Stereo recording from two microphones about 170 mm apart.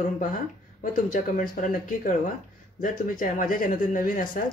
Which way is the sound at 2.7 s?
50° left (ahead or behind).